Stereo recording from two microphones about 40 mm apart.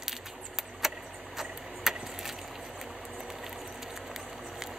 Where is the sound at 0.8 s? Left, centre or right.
Centre.